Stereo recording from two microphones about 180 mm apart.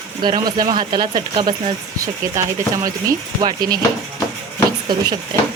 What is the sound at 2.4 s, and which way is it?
Speech, 15° right (ahead or behind).